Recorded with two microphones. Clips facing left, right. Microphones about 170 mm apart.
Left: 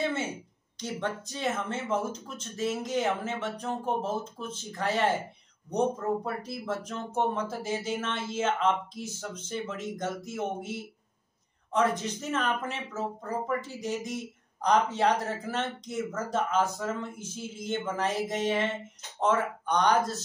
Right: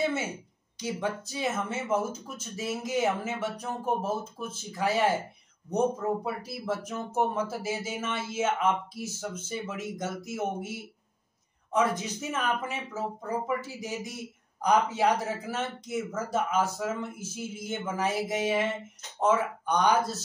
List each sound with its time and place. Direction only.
0.7 s speech: 5° right (ahead or behind)